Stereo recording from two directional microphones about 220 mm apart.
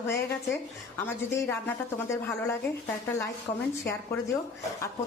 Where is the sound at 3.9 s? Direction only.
10° left (ahead or behind).